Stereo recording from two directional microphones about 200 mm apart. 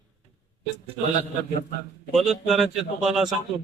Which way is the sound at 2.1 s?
Centre (ahead or behind).